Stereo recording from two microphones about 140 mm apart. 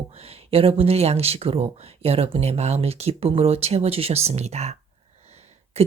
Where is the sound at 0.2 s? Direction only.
45° right (ahead or behind).